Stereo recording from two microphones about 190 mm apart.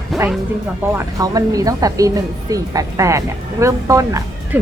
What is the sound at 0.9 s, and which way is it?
Speech, 20° right (ahead or behind).